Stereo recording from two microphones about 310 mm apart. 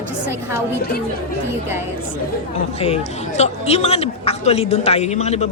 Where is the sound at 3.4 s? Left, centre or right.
Left.